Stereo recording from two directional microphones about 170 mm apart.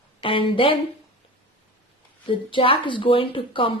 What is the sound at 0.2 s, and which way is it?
Speech, 30° left (ahead or behind).